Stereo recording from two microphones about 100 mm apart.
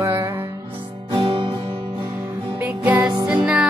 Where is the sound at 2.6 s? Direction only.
15° right (ahead or behind).